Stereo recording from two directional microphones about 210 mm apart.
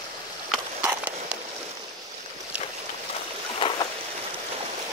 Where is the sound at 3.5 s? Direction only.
25° left (ahead or behind).